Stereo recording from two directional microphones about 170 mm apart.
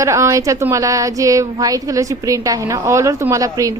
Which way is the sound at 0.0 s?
20° right (ahead or behind).